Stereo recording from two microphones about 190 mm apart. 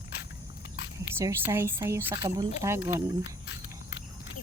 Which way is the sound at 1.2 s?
15° right (ahead or behind).